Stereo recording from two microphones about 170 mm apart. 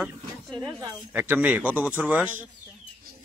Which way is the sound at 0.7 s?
25° right (ahead or behind).